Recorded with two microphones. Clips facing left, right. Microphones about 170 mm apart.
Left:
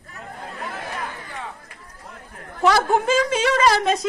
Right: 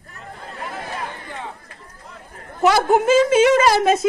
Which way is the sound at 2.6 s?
20° right (ahead or behind).